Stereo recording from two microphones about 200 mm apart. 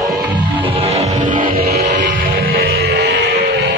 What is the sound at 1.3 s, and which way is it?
Music, 45° right (ahead or behind).